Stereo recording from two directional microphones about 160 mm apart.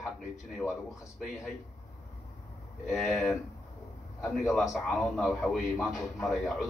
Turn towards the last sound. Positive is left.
turn(degrees=0)  # may be behind; listen again after turning